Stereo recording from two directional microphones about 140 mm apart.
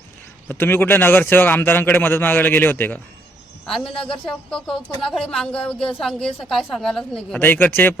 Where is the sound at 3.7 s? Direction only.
5° left (ahead or behind).